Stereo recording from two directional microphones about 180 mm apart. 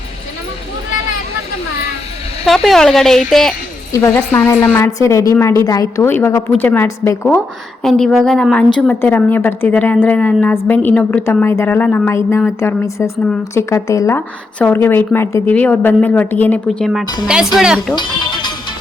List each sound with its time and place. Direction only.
2.4 s speech: centre (ahead or behind)
3.9 s speech: 15° left (ahead or behind); by 17.9 s 5° right (ahead or behind)
17.9 s music: 25° left (ahead or behind)